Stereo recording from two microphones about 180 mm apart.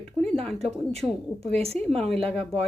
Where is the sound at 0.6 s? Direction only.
35° right (ahead or behind).